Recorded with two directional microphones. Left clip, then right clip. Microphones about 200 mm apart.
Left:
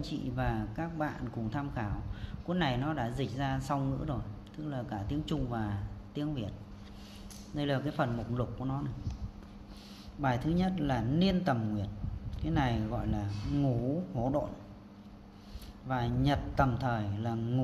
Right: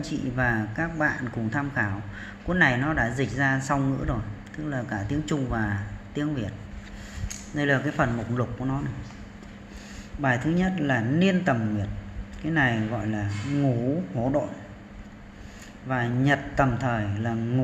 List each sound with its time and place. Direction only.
0.0 s a man's voice: 5° left (ahead or behind)
7.5 s speech: 5° left (ahead or behind)
10.2 s speech: 15° left (ahead or behind)
15.9 s speech: 15° left (ahead or behind)